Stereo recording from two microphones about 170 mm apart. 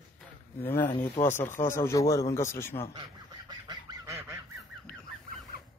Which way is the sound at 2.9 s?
25° right (ahead or behind).